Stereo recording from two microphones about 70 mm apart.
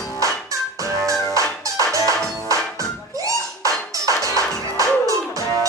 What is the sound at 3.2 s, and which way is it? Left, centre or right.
Music, right.